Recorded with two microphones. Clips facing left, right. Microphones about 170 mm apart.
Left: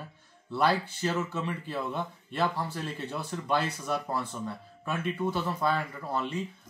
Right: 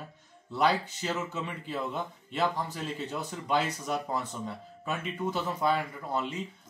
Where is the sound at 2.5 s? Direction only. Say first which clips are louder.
Even; 15° right (ahead or behind).